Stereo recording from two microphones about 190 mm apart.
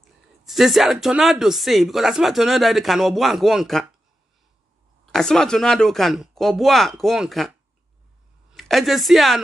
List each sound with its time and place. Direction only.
0.5 s speech: centre (ahead or behind)
5.0 s speech: 5° left (ahead or behind)